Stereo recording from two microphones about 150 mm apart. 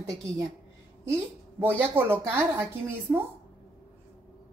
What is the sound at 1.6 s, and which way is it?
Speech, 15° right (ahead or behind).